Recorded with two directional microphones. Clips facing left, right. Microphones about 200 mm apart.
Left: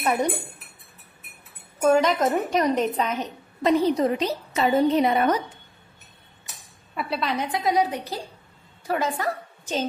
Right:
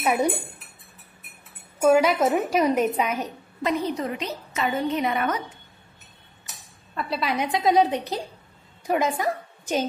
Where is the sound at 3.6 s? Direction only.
35° left (ahead or behind).